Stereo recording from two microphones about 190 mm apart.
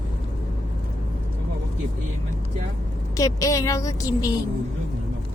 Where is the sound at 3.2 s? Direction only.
15° left (ahead or behind).